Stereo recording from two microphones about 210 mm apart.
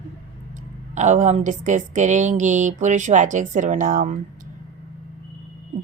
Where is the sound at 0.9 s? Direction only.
35° right (ahead or behind).